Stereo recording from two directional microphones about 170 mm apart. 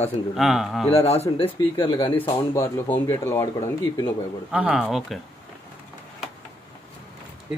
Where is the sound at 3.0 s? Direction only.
15° left (ahead or behind).